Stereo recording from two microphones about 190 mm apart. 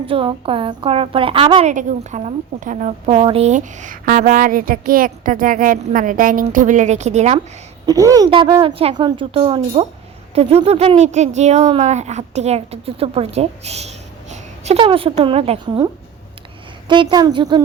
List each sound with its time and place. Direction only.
0.0 s a woman's voice: 30° right (ahead or behind)
1.7 s a woman's voice: 40° right (ahead or behind)
7.9 s a woman's voice: 20° right (ahead or behind)
16.9 s a woman's voice: 25° right (ahead or behind)